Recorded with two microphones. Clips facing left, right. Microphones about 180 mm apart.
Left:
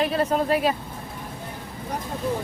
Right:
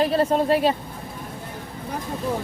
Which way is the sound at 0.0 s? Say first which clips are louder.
Right 3 dB; 30° right (ahead or behind).